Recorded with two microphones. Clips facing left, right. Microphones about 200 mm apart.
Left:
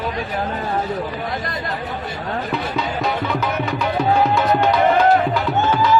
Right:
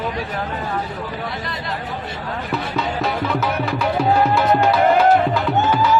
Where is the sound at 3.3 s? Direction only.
5° right (ahead or behind).